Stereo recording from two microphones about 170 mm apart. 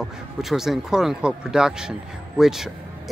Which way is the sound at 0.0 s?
Centre (ahead or behind).